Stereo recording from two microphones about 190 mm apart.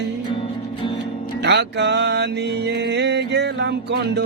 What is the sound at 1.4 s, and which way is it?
Music, 65° right (ahead or behind).